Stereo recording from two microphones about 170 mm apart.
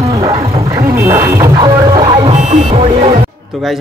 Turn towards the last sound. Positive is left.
turn(degrees=-35)  # may be behind; listen again after turning